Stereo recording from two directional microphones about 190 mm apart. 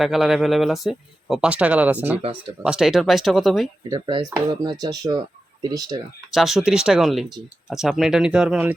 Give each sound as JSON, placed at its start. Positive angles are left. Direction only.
{"t": 0.0, "sound": "speech", "side_deg": 0}
{"t": 3.8, "sound": "speech", "side_deg": -20}
{"t": 6.3, "sound": "speech", "side_deg": 0}